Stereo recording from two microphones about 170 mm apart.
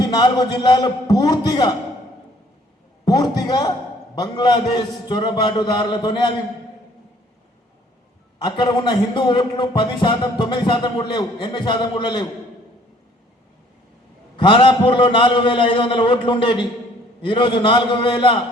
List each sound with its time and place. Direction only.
0.0 s a man's voice: 25° left (ahead or behind)
3.0 s a man's voice: 20° left (ahead or behind)
8.4 s a man's voice: 25° left (ahead or behind)
14.3 s a man's voice: 30° left (ahead or behind)